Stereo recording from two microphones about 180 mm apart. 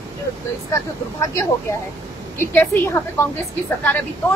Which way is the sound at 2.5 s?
10° left (ahead or behind).